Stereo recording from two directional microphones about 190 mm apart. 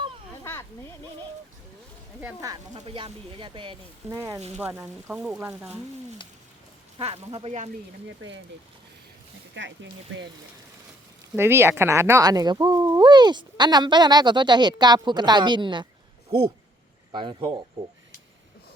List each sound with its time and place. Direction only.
2.7 s speech: 30° right (ahead or behind); by 5.7 s 10° right (ahead or behind)
7.0 s speech: 30° right (ahead or behind)
8.2 s speech: 90° right
9.6 s speech: 75° right (ahead or behind)
11.3 s speech: 10° right (ahead or behind)
17.1 s speech: 25° right (ahead or behind)